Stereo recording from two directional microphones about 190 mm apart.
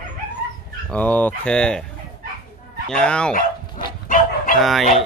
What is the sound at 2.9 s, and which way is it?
Speech, 5° left (ahead or behind).